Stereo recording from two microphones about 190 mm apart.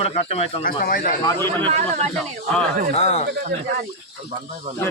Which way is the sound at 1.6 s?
35° right (ahead or behind).